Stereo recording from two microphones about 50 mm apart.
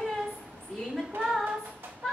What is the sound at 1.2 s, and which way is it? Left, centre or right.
Female singing, centre.